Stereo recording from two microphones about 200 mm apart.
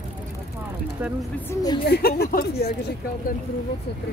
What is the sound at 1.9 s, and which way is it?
Speech, 50° left (ahead or behind).